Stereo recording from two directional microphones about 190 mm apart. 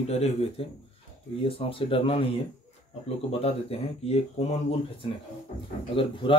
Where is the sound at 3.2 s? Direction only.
30° left (ahead or behind).